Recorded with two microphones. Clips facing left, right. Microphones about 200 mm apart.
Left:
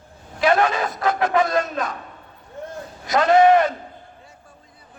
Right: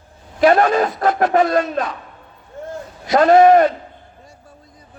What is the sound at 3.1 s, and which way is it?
Speech, 45° right (ahead or behind).